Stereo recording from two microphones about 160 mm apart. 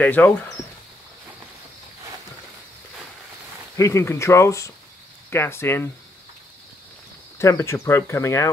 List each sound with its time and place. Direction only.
0.0 s speech: 10° left (ahead or behind)
3.7 s speech: 20° left (ahead or behind)
7.3 s speech: 20° left (ahead or behind)